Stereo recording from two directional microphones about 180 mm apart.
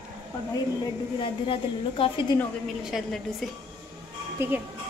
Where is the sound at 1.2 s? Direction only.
30° left (ahead or behind).